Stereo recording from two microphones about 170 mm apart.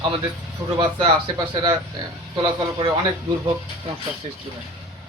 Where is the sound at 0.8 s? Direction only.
30° right (ahead or behind).